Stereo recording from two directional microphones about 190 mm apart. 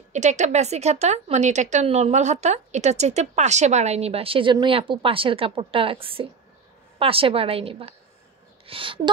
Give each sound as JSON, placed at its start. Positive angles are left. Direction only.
{"t": 0.1, "sound": "a woman's voice", "side_deg": -40}